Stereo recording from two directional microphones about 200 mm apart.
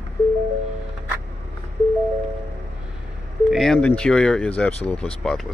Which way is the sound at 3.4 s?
Centre (ahead or behind).